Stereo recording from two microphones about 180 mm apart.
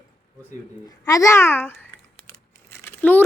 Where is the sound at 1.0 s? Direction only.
15° left (ahead or behind).